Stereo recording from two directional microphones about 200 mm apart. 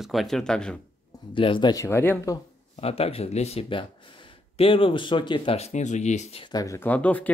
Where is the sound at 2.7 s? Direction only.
30° left (ahead or behind).